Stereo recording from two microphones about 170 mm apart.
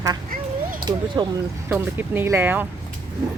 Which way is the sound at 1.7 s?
10° right (ahead or behind).